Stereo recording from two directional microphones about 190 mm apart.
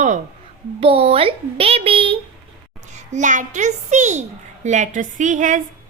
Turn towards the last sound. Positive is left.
turn(degrees=-40)  # may be behind; listen again after turning